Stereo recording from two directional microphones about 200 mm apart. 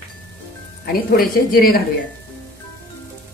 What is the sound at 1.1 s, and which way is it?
Speech, 50° left (ahead or behind).